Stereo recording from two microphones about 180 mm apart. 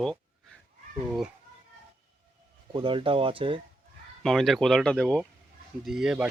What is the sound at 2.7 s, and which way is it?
Speech, 25° right (ahead or behind).